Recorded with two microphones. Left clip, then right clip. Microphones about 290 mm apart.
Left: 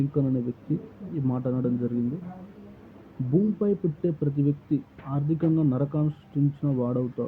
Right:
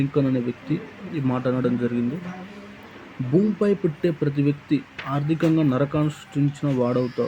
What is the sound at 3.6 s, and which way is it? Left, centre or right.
Speech, centre.